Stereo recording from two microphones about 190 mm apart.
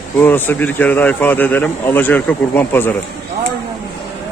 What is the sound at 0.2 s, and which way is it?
Speech, 10° left (ahead or behind).